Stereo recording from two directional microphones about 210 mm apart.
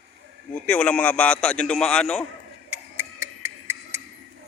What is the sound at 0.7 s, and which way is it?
A man's voice, 5° left (ahead or behind).